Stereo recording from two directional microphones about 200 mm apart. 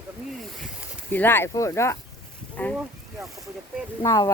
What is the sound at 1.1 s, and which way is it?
Speech, 10° left (ahead or behind).